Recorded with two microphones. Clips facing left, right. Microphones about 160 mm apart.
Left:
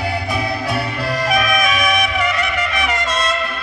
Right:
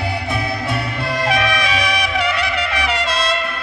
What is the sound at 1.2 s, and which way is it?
Music, 30° right (ahead or behind).